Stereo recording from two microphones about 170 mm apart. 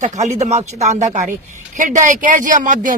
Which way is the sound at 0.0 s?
45° right (ahead or behind).